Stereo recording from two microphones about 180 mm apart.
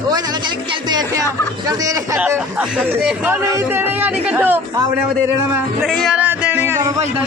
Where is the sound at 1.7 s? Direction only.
20° right (ahead or behind).